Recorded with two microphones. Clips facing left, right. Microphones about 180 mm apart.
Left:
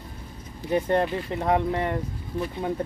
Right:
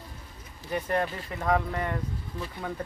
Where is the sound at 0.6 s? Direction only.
30° left (ahead or behind).